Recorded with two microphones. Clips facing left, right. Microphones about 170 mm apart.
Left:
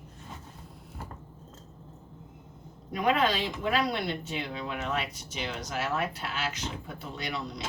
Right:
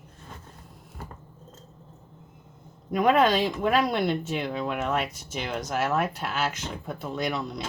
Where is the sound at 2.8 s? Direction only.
50° right (ahead or behind).